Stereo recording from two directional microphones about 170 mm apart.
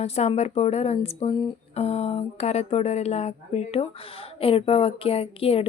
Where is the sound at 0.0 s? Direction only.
40° left (ahead or behind).